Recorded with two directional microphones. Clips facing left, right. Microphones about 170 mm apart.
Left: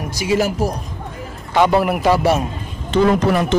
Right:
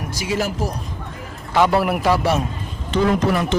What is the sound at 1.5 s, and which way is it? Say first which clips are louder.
Speech: left 2 dB; centre (ahead or behind).